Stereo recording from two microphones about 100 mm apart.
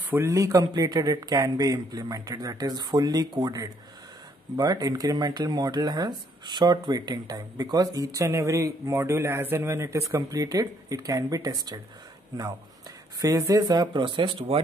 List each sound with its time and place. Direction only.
0.1 s speech: 30° right (ahead or behind); by 14.6 s 55° right (ahead or behind)